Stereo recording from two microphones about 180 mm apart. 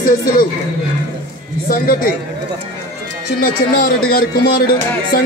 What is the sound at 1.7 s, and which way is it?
Speech, 50° left (ahead or behind).